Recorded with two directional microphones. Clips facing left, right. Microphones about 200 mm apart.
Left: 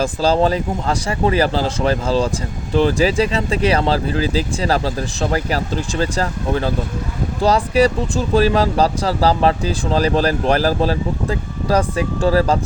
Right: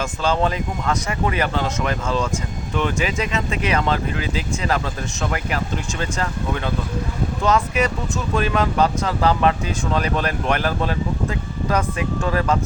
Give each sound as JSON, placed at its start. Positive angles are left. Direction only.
{"t": 0.0, "sound": "speech", "side_deg": 35}